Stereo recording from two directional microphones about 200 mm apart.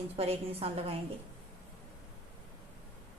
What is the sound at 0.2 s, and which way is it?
Speech, 30° right (ahead or behind).